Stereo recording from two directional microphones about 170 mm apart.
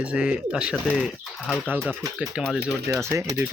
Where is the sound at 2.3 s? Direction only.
5° right (ahead or behind).